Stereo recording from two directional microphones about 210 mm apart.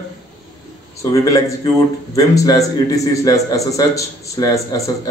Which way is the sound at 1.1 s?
15° left (ahead or behind).